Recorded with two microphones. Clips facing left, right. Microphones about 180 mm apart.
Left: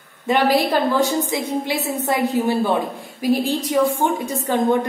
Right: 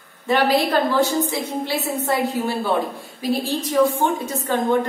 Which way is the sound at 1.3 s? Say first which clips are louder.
Left 2 dB; 15° left (ahead or behind).